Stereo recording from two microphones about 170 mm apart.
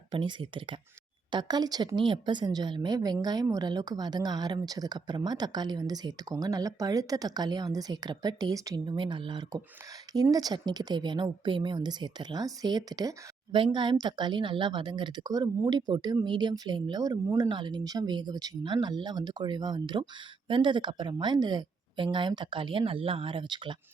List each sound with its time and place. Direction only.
0.1 s speech: 30° right (ahead or behind)